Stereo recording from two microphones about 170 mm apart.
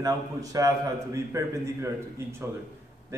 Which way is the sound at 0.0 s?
20° right (ahead or behind).